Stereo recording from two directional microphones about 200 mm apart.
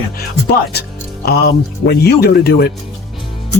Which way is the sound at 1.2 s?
50° left (ahead or behind).